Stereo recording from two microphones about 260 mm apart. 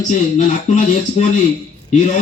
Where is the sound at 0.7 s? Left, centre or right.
Left.